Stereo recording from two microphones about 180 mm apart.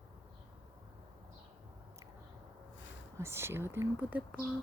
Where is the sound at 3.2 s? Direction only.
15° right (ahead or behind).